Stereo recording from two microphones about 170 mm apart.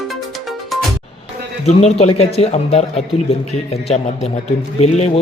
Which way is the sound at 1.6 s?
40° left (ahead or behind).